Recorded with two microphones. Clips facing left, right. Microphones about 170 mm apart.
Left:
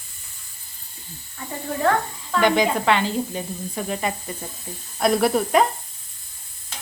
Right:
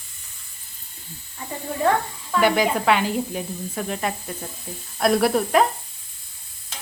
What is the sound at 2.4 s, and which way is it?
Speech, 5° right (ahead or behind).